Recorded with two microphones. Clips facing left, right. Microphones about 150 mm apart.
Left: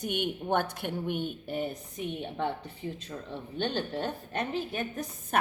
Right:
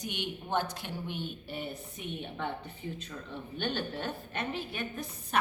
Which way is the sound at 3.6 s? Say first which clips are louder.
Left 3 dB; 35° left (ahead or behind).